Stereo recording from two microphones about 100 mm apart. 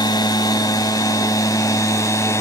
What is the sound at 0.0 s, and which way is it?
Vehicle, 40° left (ahead or behind).